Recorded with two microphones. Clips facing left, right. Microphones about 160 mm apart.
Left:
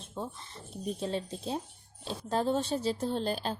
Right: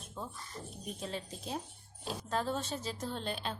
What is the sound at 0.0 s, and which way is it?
A woman's voice, 30° left (ahead or behind).